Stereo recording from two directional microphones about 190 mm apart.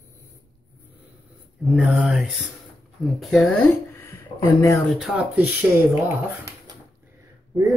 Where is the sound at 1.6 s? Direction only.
Centre (ahead or behind).